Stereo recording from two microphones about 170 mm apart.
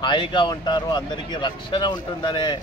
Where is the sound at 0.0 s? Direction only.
30° left (ahead or behind).